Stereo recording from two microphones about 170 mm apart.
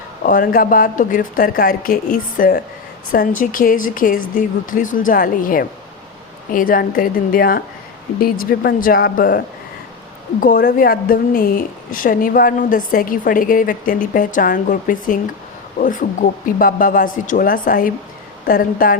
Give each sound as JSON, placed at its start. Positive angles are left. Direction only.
{"t": 0.2, "sound": "a woman's voice", "side_deg": 55}
{"t": 3.1, "sound": "a woman's voice", "side_deg": 50}
{"t": 10.4, "sound": "a woman's voice", "side_deg": 60}